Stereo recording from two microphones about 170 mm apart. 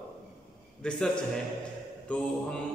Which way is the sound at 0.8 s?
5° left (ahead or behind).